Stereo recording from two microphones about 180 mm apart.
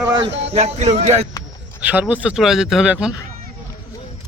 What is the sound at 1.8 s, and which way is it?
Speech, 10° right (ahead or behind).